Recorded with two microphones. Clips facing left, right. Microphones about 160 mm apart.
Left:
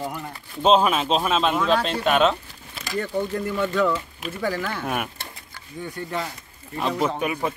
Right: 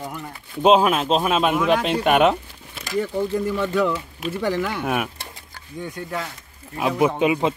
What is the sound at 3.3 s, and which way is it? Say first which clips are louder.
Speech: right 2 dB; 5° right (ahead or behind).